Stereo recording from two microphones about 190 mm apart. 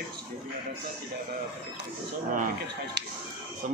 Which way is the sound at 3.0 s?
65° right (ahead or behind).